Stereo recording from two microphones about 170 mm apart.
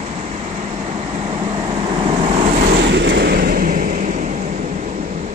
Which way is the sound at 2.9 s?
90° right.